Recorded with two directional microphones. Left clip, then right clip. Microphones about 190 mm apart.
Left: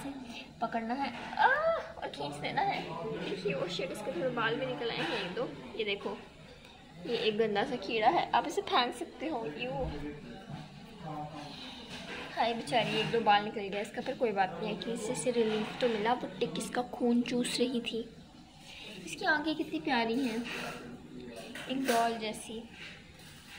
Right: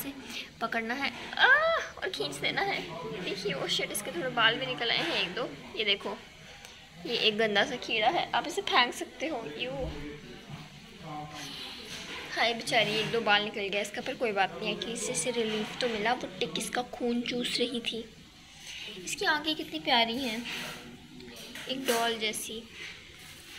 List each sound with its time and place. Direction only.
0.3 s a woman's voice: 10° right (ahead or behind)
7.2 s a woman's voice: 5° right (ahead or behind)
12.4 s a woman's voice: centre (ahead or behind); by 17.2 s 15° left (ahead or behind)
17.2 s a woman's voice: 25° left (ahead or behind)
17.6 s a woman's voice: 15° left (ahead or behind)
19.0 s a woman's voice: 10° right (ahead or behind)
21.6 s a woman's voice: 10° right (ahead or behind)